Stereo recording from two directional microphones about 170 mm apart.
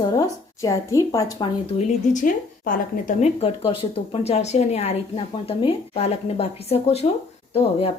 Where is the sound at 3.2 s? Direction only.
35° left (ahead or behind).